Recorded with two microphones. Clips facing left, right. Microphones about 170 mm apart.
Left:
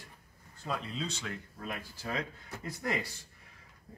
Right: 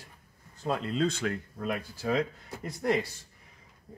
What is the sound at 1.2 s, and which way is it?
Speech, 75° right (ahead or behind).